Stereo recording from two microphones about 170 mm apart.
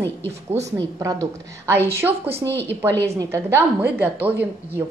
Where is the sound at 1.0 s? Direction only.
15° right (ahead or behind).